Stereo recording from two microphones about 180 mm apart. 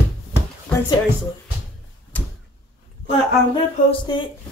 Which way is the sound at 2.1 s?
10° left (ahead or behind).